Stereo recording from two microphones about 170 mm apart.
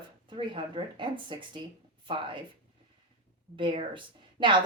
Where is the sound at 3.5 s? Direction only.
30° right (ahead or behind).